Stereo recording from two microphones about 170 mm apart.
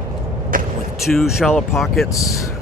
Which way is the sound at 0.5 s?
55° right (ahead or behind).